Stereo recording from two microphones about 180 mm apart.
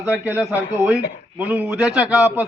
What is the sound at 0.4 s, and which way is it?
A man's voice, 15° right (ahead or behind).